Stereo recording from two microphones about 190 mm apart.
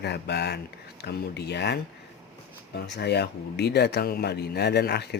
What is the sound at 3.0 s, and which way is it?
A man's voice, 60° left (ahead or behind).